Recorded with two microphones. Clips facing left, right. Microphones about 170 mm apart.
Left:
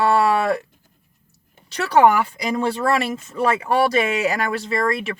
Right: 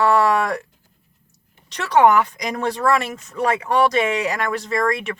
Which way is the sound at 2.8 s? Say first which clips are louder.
Right 1 dB; 30° left (ahead or behind).